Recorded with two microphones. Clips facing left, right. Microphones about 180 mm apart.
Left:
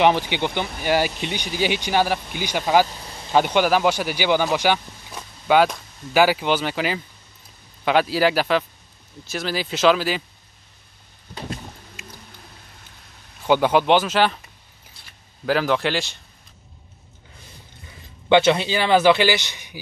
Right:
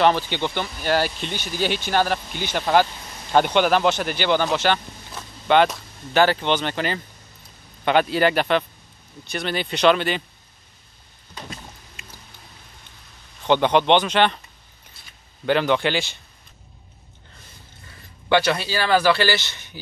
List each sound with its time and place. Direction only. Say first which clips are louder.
0.3 s speech: left 1 dB; 15° left (ahead or behind)
13.5 s speech: even; 5° left (ahead or behind)
15.4 s speech: right 1 dB; centre (ahead or behind)
17.8 s speech: left 5 dB; 20° left (ahead or behind)